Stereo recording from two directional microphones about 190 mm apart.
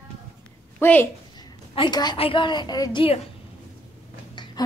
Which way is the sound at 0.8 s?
10° left (ahead or behind).